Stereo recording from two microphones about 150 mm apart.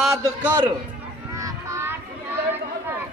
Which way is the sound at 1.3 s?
20° right (ahead or behind).